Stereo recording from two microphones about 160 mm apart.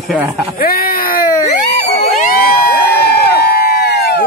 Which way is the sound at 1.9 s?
40° left (ahead or behind).